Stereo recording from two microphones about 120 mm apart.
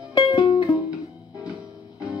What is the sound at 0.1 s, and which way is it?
Music, 40° left (ahead or behind).